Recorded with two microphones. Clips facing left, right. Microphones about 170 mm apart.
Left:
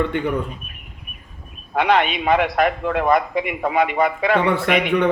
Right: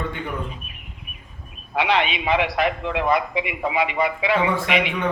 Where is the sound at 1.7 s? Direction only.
50° left (ahead or behind).